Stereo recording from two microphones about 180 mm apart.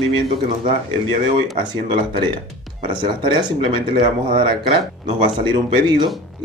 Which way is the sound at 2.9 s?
25° right (ahead or behind).